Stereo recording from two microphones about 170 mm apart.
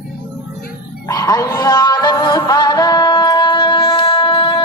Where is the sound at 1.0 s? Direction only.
20° left (ahead or behind).